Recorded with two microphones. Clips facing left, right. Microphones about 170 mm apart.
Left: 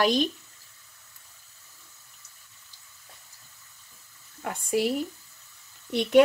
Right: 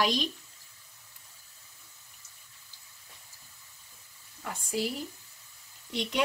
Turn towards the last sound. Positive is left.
turn(degrees=55)  # may be behind; listen again after turning